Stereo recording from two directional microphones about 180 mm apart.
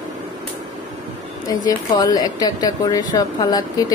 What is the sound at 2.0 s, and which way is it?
A woman's voice, 20° left (ahead or behind).